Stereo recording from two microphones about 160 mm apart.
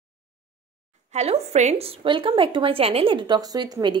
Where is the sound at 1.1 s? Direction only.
45° right (ahead or behind).